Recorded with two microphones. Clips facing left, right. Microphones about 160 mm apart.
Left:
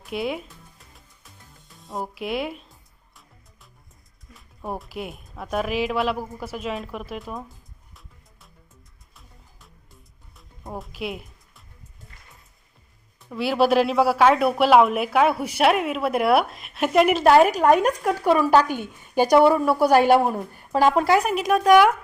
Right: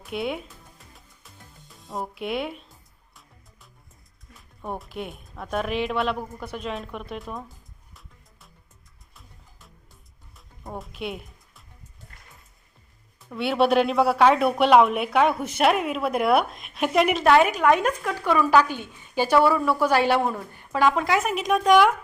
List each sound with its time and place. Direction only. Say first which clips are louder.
0.0 s music: left 1 dB; centre (ahead or behind)
4.4 s speech: left 2 dB; centre (ahead or behind)
9.1 s music: even; centre (ahead or behind)
13.3 s speech: left 1 dB; centre (ahead or behind)
17.2 s speech: left 2 dB; 40° left (ahead or behind)
21.2 s speech: left 2 dB; centre (ahead or behind)